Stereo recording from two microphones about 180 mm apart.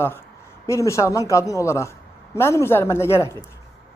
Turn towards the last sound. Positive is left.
turn(degrees=15)  # may be behind; listen again after turning